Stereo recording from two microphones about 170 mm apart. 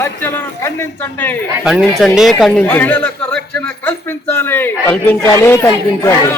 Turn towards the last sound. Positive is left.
turn(degrees=15)  # may be behind; listen again after turning